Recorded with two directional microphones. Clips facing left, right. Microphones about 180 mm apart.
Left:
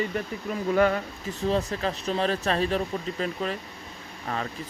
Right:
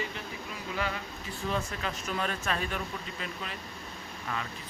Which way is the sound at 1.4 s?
35° left (ahead or behind).